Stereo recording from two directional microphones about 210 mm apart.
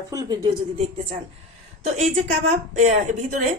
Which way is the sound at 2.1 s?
35° right (ahead or behind).